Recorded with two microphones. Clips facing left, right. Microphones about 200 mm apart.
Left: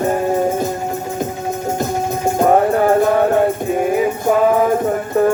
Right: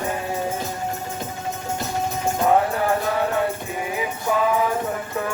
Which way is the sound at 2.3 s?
45° left (ahead or behind).